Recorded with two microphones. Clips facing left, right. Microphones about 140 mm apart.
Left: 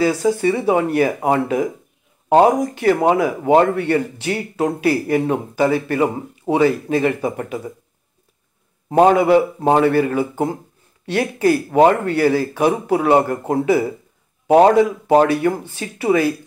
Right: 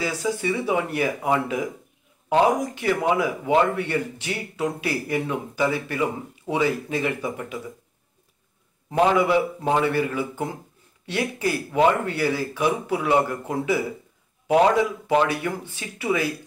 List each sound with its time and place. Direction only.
0.0 s speech: 50° left (ahead or behind)
8.8 s speech: 50° left (ahead or behind)
15.2 s speech: 45° left (ahead or behind)